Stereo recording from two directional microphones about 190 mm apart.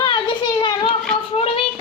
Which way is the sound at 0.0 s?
25° left (ahead or behind).